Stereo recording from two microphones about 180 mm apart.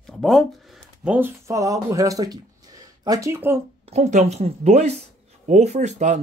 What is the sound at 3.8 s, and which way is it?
Speech, 35° right (ahead or behind).